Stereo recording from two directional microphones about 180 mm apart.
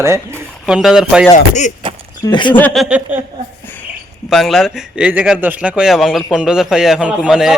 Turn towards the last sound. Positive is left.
turn(degrees=-5)  # may be behind; listen again after turning